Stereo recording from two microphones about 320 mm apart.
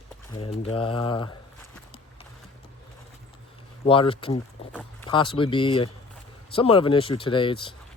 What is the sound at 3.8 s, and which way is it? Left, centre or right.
Speech, centre.